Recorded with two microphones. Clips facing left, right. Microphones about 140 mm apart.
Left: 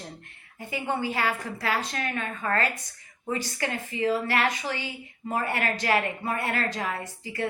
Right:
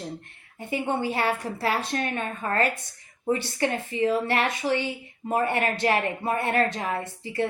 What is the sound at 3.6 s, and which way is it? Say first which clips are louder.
A woman's voice: right 3 dB; 20° right (ahead or behind).